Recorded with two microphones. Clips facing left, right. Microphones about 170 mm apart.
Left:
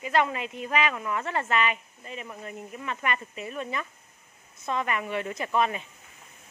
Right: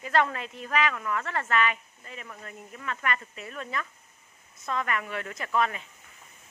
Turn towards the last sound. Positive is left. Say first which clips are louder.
# left 2 dB
turn(degrees=20)  # may be behind; listen again after turning